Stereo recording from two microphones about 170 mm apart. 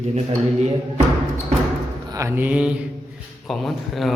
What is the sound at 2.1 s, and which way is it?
A man's voice, 15° right (ahead or behind).